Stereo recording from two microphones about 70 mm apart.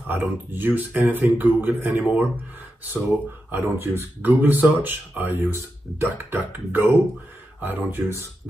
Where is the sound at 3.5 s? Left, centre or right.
Right.